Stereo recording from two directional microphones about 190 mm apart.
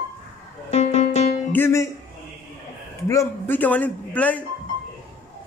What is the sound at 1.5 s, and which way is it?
Speech, 15° left (ahead or behind).